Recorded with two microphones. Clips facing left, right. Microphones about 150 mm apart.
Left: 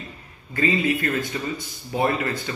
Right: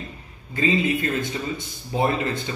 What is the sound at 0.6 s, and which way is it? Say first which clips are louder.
A man's voice: even; 20° right (ahead or behind).